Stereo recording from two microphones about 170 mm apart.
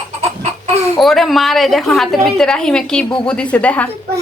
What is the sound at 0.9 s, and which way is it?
A woman's voice, centre (ahead or behind).